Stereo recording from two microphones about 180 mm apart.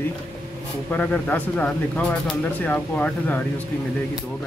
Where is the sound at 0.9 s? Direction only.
10° left (ahead or behind).